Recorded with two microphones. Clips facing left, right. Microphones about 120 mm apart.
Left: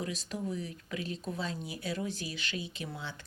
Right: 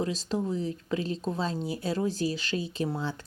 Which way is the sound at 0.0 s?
30° right (ahead or behind).